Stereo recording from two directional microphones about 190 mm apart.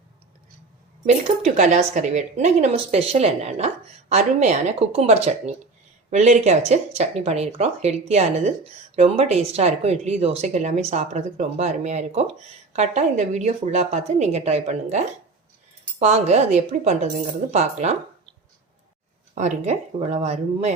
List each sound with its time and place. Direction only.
1.0 s speech: 40° right (ahead or behind)
19.3 s speech: 35° right (ahead or behind)